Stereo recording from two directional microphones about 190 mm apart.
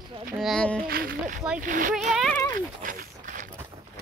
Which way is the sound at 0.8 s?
50° right (ahead or behind).